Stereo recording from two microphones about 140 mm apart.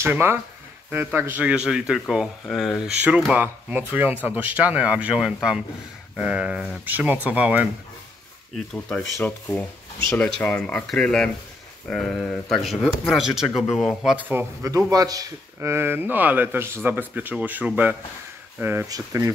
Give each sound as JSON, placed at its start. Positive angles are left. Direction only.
{"t": 0.0, "sound": "speech", "side_deg": -15}
{"t": 8.7, "sound": "speech", "side_deg": 10}
{"t": 10.0, "sound": "speech", "side_deg": 10}
{"t": 14.3, "sound": "speech", "side_deg": -15}
{"t": 14.9, "sound": "speech", "side_deg": -25}